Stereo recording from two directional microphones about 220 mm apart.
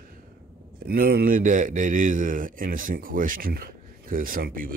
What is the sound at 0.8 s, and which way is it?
A man's voice, 45° right (ahead or behind).